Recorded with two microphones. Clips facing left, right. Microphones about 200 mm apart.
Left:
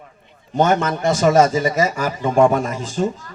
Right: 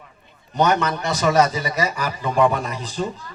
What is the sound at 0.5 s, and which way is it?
Speech, 50° left (ahead or behind).